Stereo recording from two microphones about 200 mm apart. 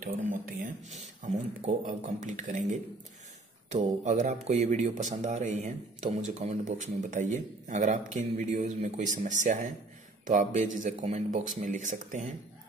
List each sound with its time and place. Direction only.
0.0 s speech: 45° right (ahead or behind)